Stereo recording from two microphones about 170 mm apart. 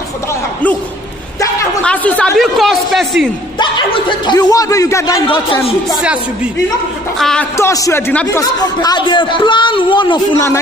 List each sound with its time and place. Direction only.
1.8 s speech: 5° left (ahead or behind)
3.5 s speech: 30° left (ahead or behind)
7.2 s speech: 5° left (ahead or behind)
7.5 s a man's voice: 20° left (ahead or behind)
8.4 s speech: 25° left (ahead or behind)